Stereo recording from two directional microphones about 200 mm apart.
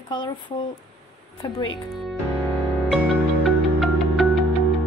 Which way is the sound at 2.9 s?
Centre (ahead or behind).